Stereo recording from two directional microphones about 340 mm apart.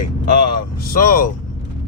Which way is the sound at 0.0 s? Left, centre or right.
Left.